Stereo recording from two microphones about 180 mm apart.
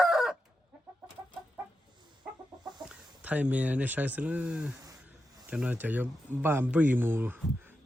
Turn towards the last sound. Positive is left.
turn(degrees=-10)  # may be behind; listen again after turning